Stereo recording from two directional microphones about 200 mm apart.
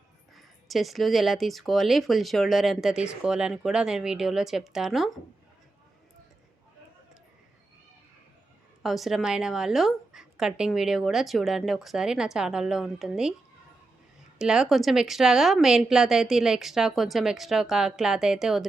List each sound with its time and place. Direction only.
0.3 s a woman's voice: centre (ahead or behind)
8.8 s a woman's voice: centre (ahead or behind)
14.3 s a woman's voice: 5° right (ahead or behind)